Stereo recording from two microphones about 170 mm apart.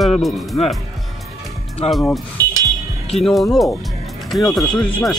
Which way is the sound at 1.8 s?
35° left (ahead or behind).